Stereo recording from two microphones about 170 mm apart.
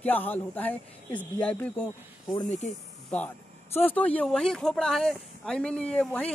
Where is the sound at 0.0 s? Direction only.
10° left (ahead or behind).